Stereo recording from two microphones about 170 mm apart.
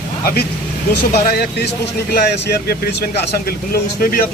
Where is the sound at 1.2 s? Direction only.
65° left (ahead or behind).